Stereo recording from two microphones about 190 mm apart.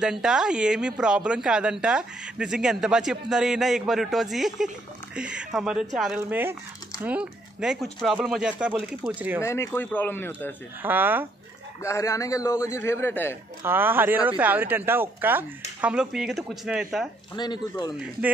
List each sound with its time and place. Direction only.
0.0 s speech: 5° right (ahead or behind)
9.4 s a man's voice: 15° left (ahead or behind)
10.8 s speech: 10° right (ahead or behind)
11.8 s a man's voice: 15° left (ahead or behind)
13.6 s speech: 10° right (ahead or behind)
17.4 s speech: 25° left (ahead or behind)